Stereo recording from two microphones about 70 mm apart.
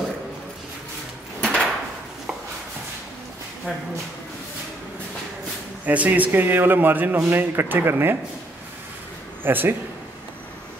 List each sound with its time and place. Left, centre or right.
1.4 s door: centre
5.9 s a man's voice: right
9.4 s a man's voice: right